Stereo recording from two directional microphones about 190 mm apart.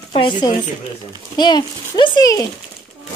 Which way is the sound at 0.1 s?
30° left (ahead or behind).